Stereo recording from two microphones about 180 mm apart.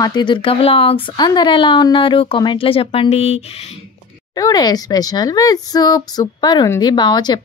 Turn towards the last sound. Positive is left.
turn(degrees=25)  # may be behind; listen again after turning